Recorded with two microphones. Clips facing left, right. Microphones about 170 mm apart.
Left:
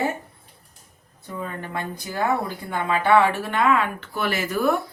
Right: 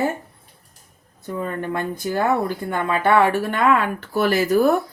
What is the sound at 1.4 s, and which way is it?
Speech, 50° right (ahead or behind).